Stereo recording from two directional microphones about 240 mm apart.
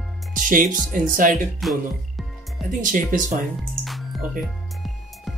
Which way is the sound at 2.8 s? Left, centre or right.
Right.